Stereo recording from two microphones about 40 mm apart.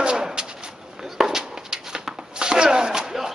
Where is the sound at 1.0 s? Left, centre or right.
Centre.